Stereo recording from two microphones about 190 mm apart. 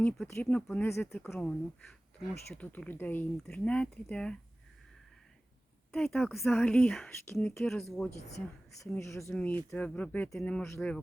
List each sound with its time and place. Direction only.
0.0 s speech: 10° left (ahead or behind)
1.1 s speech: centre (ahead or behind)
5.9 s speech: centre (ahead or behind)
9.0 s speech: 15° left (ahead or behind)